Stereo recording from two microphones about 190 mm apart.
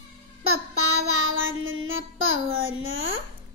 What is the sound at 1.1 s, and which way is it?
Child singing, 90° right.